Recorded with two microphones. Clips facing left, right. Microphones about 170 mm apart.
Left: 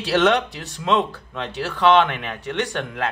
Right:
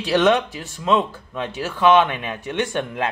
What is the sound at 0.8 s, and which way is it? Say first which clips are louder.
Speech: right 1 dB; 10° right (ahead or behind).